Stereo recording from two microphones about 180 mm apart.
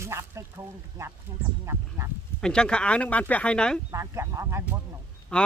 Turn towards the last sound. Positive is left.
turn(degrees=5)  # may be behind; listen again after turning